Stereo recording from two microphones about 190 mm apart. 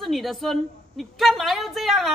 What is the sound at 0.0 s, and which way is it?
A woman's voice, centre (ahead or behind).